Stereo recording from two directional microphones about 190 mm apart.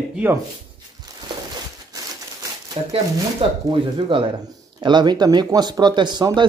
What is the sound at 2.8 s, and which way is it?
Speech, 25° right (ahead or behind).